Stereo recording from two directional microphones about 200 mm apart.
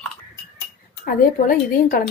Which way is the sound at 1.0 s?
45° left (ahead or behind).